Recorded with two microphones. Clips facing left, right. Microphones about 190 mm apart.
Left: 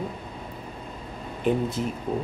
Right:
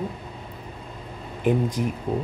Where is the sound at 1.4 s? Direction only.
15° right (ahead or behind).